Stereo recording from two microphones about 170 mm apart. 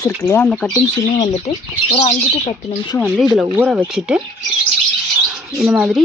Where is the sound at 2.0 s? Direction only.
40° left (ahead or behind).